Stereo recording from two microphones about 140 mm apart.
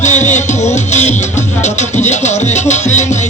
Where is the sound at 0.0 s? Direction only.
60° left (ahead or behind).